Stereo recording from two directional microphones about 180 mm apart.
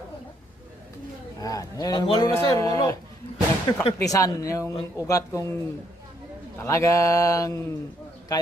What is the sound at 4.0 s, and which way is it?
A man's voice, 20° left (ahead or behind).